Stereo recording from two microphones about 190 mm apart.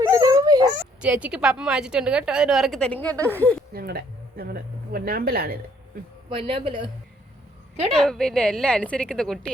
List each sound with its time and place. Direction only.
0.0 s dog: 20° right (ahead or behind)
1.0 s a woman's voice: 5° right (ahead or behind)
3.7 s speech: 55° right (ahead or behind)
6.3 s speech: 30° right (ahead or behind)
7.9 s a woman's voice: 5° left (ahead or behind)